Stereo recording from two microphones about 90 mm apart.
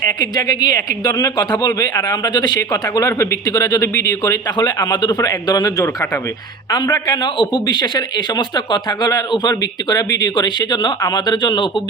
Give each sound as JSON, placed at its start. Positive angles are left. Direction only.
{"t": 0.2, "sound": "speech", "side_deg": 50}
{"t": 4.5, "sound": "speech", "side_deg": 45}